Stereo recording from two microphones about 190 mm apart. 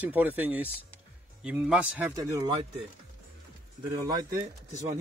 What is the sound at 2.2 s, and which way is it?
Speech, 20° right (ahead or behind).